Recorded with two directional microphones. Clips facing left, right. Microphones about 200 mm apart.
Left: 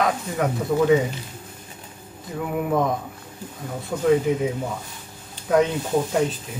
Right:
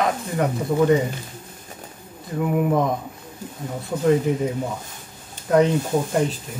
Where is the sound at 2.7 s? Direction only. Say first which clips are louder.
Left 2 dB; centre (ahead or behind).